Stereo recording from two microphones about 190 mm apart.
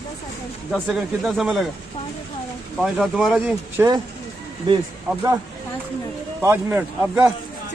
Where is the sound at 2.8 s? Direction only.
Centre (ahead or behind).